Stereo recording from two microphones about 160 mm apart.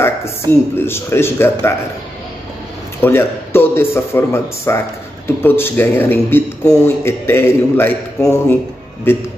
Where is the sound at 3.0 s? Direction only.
15° left (ahead or behind).